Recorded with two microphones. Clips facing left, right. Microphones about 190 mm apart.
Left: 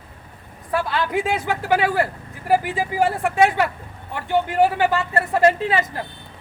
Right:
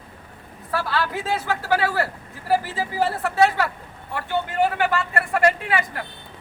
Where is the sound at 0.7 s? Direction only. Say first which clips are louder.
Left 3 dB; 20° left (ahead or behind).